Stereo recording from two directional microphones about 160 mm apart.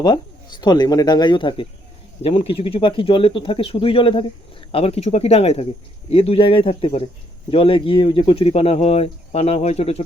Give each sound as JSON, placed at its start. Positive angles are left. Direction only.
{"t": 0.0, "sound": "speech", "side_deg": 25}